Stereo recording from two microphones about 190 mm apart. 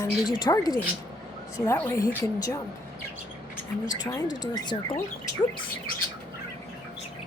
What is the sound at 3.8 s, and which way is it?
Speech, 20° left (ahead or behind).